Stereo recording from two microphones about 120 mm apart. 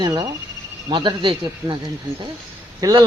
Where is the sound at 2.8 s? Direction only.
30° right (ahead or behind).